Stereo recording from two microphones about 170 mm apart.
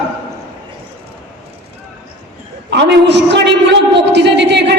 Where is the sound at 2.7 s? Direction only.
90° right.